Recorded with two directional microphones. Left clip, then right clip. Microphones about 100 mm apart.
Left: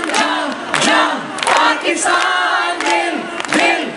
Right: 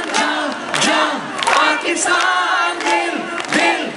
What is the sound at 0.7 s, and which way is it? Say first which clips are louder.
Crowd: left 3 dB; 25° left (ahead or behind).